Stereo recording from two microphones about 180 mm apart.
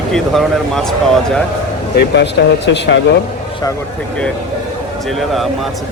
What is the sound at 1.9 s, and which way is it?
Speech, 70° left (ahead or behind).